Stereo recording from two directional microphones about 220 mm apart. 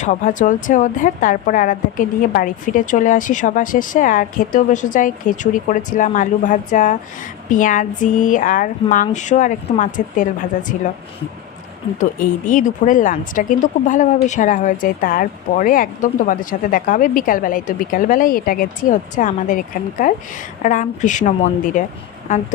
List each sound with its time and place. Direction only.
0.0 s speech: 35° left (ahead or behind)
11.9 s speech: 35° left (ahead or behind)